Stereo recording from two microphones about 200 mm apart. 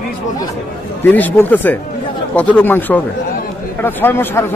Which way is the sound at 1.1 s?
10° left (ahead or behind).